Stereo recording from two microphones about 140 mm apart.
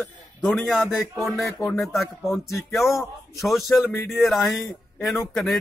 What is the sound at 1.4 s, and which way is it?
Speech, 15° left (ahead or behind).